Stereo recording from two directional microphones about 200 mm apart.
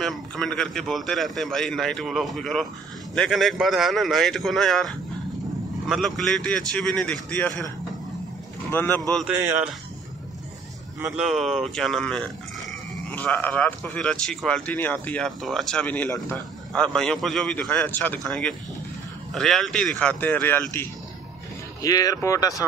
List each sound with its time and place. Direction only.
0.0 s speech: centre (ahead or behind)
8.7 s speech: 10° left (ahead or behind)
9.1 s speech: centre (ahead or behind)
11.1 s speech: centre (ahead or behind); by 22.7 s 15° left (ahead or behind)